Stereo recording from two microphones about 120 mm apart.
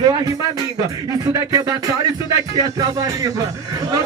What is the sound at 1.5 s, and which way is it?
Speech, 30° right (ahead or behind).